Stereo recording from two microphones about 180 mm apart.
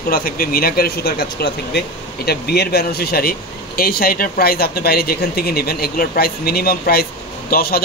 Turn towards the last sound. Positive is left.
turn(degrees=55)  # may be behind; listen again after turning